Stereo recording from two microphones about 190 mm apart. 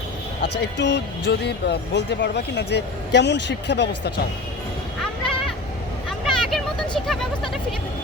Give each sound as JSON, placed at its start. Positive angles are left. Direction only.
{"t": 0.6, "sound": "speech", "side_deg": 65}
{"t": 4.9, "sound": "music", "side_deg": 0}
{"t": 6.1, "sound": "vehicle", "side_deg": 0}